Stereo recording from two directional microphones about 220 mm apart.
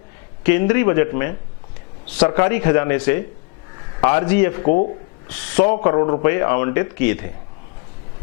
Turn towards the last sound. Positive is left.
turn(degrees=15)  # may be behind; listen again after turning